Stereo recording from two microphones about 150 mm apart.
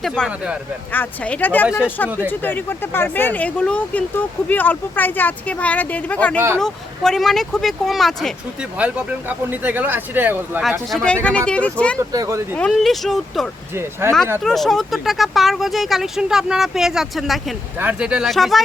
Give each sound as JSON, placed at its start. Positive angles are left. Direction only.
{"t": 0.0, "sound": "speech", "side_deg": 0}
{"t": 0.9, "sound": "speech", "side_deg": 10}
{"t": 2.0, "sound": "speech", "side_deg": -10}
{"t": 2.4, "sound": "speech", "side_deg": 15}
{"t": 8.8, "sound": "speech", "side_deg": -10}
{"t": 10.6, "sound": "speech", "side_deg": 0}
{"t": 12.1, "sound": "speech", "side_deg": -20}
{"t": 12.5, "sound": "speech", "side_deg": 5}
{"t": 14.0, "sound": "speech", "side_deg": -15}
{"t": 14.4, "sound": "speech", "side_deg": 0}